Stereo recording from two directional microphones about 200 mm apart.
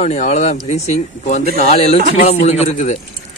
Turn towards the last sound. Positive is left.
turn(degrees=35)  # may be behind; listen again after turning